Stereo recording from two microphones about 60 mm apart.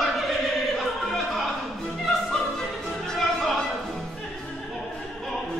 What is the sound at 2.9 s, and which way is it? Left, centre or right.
Music, centre.